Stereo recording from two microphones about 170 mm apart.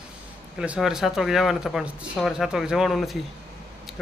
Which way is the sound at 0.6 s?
5° right (ahead or behind).